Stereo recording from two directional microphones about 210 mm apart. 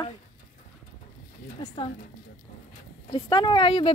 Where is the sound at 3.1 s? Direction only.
20° left (ahead or behind).